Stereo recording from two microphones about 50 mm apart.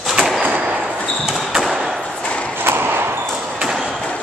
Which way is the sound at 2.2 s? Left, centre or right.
Left.